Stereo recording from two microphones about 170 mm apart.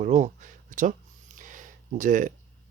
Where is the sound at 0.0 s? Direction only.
45° right (ahead or behind).